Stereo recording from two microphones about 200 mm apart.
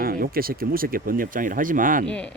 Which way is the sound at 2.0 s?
5° left (ahead or behind).